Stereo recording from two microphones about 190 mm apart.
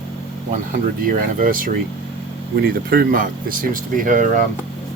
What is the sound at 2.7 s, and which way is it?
Speech, 55° right (ahead or behind).